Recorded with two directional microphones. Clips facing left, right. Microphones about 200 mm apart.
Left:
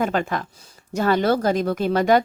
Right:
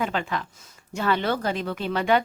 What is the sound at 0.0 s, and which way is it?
Speech, 45° left (ahead or behind).